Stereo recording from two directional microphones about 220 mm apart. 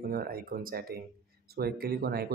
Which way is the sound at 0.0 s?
45° right (ahead or behind).